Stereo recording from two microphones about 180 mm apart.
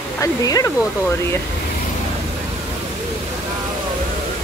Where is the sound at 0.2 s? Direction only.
20° left (ahead or behind).